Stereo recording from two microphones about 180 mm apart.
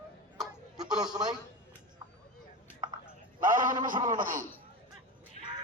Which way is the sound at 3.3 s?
50° right (ahead or behind).